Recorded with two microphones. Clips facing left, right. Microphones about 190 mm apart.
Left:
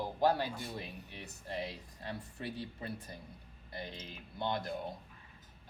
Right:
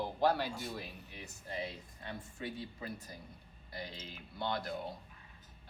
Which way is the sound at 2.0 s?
35° left (ahead or behind).